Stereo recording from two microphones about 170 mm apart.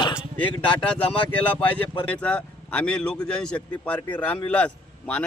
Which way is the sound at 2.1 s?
5° left (ahead or behind).